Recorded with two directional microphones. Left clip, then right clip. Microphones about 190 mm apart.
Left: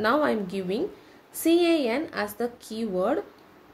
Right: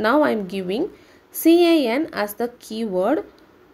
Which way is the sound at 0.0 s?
30° right (ahead or behind).